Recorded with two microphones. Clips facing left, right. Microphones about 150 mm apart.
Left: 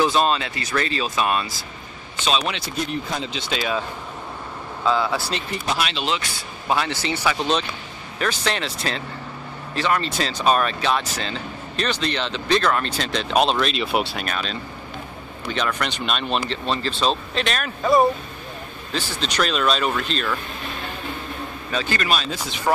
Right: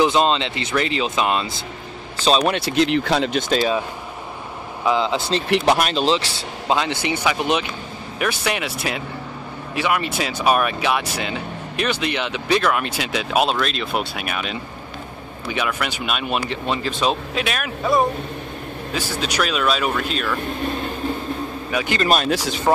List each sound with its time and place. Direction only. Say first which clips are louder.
0.0 s speech: right 2 dB; 20° right (ahead or behind)
2.2 s speech: right 6 dB; 40° right (ahead or behind)
2.5 s speech: right 8 dB; 80° right
3.3 s speech: right 7 dB; 45° right (ahead or behind)
4.8 s speech: right 2 dB; 20° right (ahead or behind)
5.8 s speech: right 6 dB; 45° right (ahead or behind)
6.7 s speech: right 2 dB; 20° right (ahead or behind); by 14.2 s centre (ahead or behind)
14.2 s speech: right 1 dB; 10° right (ahead or behind)
21.6 s speech: right 2 dB; 15° right (ahead or behind)
22.0 s speech: right 9 dB; 45° right (ahead or behind)